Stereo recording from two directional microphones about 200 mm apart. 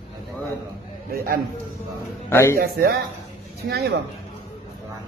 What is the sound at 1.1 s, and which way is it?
Speech, 50° right (ahead or behind).